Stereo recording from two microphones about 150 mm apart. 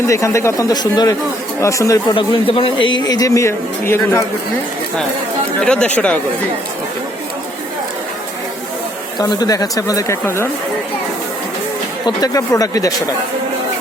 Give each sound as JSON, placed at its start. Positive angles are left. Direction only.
{"t": 0.1, "sound": "a man's voice", "side_deg": 20}
{"t": 2.1, "sound": "a man's voice", "side_deg": 35}
{"t": 5.5, "sound": "speech", "side_deg": 5}
{"t": 9.1, "sound": "a man's voice", "side_deg": 25}
{"t": 12.0, "sound": "a man's voice", "side_deg": 25}